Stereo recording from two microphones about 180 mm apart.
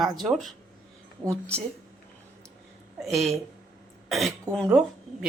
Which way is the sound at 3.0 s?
Centre (ahead or behind).